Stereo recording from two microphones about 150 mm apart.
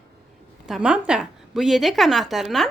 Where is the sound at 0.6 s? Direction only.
5° right (ahead or behind).